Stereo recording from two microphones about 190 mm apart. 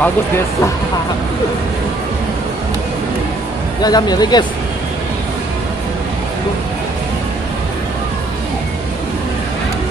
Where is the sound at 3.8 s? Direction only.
20° left (ahead or behind).